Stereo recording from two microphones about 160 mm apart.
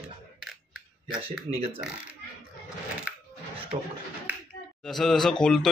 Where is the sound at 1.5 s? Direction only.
35° right (ahead or behind).